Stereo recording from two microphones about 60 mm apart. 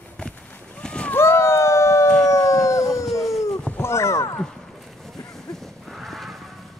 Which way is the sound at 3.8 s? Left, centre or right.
Left.